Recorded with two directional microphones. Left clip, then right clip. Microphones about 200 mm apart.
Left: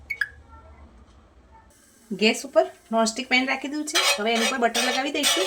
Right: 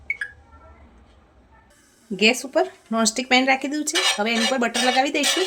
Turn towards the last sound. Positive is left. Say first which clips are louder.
# right 4 dB
turn(degrees=-45)  # may be behind; listen again after turning